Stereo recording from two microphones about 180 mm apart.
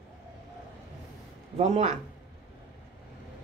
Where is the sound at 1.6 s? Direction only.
35° right (ahead or behind).